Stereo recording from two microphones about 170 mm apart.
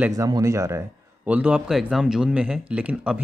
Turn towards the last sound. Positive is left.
turn(degrees=-5)  # may be behind; listen again after turning